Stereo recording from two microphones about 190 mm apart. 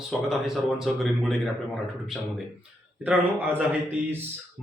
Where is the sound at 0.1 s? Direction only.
Centre (ahead or behind).